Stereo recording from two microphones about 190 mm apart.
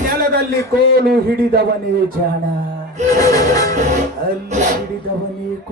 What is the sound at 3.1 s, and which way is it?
Music, 20° left (ahead or behind).